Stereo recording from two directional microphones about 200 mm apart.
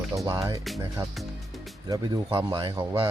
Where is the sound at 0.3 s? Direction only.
15° right (ahead or behind).